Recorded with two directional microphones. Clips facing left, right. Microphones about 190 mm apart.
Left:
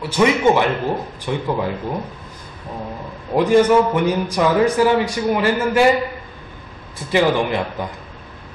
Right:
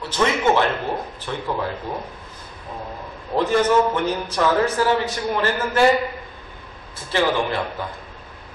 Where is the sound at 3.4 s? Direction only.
10° left (ahead or behind).